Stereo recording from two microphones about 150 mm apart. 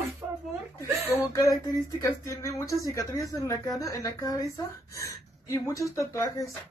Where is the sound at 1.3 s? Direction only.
20° left (ahead or behind).